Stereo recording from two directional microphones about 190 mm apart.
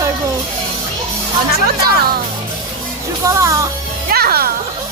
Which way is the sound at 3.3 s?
15° right (ahead or behind).